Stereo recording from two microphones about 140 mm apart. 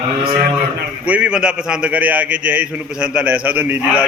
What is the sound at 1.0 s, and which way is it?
A man's voice, 10° right (ahead or behind).